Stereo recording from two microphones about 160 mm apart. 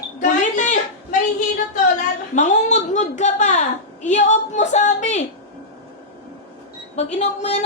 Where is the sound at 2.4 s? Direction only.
45° left (ahead or behind).